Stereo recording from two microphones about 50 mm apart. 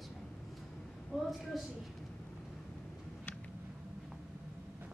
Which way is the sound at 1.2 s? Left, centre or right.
Centre.